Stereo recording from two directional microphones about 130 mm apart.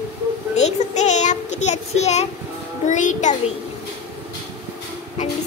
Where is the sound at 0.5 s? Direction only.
60° left (ahead or behind).